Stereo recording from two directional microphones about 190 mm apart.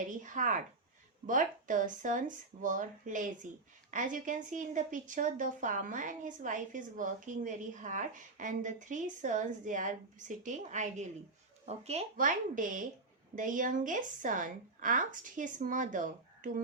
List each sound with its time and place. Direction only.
0.2 s speech: 40° right (ahead or behind)